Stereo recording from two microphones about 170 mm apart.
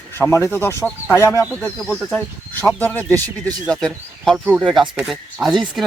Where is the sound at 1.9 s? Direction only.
Centre (ahead or behind).